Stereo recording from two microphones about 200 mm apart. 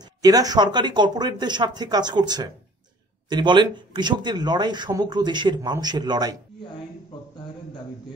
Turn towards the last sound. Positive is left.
turn(degrees=-20)  # may be behind; listen again after turning